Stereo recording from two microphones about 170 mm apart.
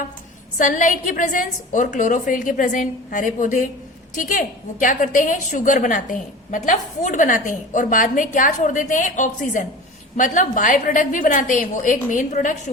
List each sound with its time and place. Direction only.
0.6 s a woman's voice: 50° left (ahead or behind)